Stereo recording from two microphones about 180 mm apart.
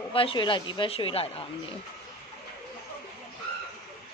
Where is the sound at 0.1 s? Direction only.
30° left (ahead or behind).